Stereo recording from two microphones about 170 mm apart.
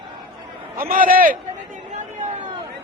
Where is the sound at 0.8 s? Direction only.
55° right (ahead or behind).